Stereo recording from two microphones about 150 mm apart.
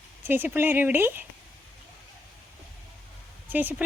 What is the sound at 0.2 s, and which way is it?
Speech, 15° right (ahead or behind).